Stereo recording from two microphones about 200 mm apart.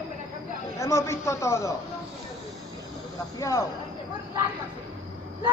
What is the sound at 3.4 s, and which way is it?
Speech, 15° left (ahead or behind).